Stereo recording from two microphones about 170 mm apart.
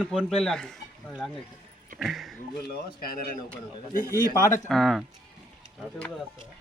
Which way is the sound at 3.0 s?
60° left (ahead or behind).